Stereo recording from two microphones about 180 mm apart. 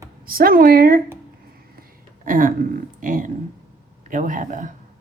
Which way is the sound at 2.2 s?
50° right (ahead or behind).